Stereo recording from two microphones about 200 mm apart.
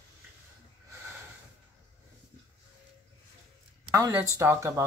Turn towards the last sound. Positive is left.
turn(degrees=-15)  # may be behind; listen again after turning